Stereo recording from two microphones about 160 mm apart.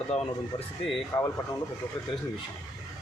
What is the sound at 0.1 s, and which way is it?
Speech, 40° left (ahead or behind).